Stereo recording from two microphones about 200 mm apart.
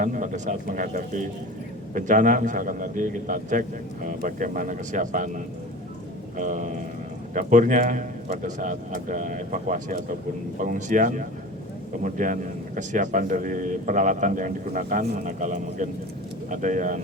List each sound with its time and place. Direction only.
0.0 s a man's voice: 40° right (ahead or behind)